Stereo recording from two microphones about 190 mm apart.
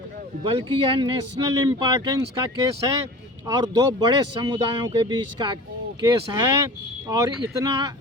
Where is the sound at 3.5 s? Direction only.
20° right (ahead or behind).